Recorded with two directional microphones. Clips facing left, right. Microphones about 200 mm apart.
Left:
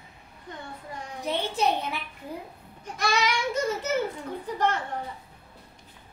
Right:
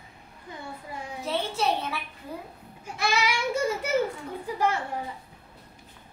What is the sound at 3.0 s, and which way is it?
Babbling, 5° right (ahead or behind).